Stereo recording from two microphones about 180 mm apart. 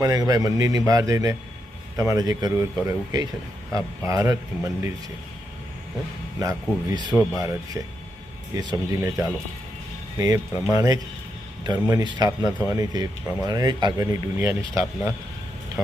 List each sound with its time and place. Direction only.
0.0 s a man's voice: 20° right (ahead or behind)
6.4 s a man's voice: 20° right (ahead or behind)